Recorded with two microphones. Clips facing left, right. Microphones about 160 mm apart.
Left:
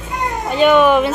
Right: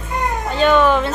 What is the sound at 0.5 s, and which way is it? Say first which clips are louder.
Speech: left 3 dB; 15° left (ahead or behind).